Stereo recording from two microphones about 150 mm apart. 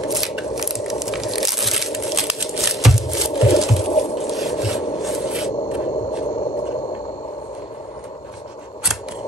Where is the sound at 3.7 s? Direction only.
45° left (ahead or behind).